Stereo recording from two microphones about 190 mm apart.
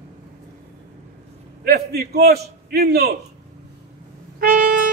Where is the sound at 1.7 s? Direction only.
60° right (ahead or behind).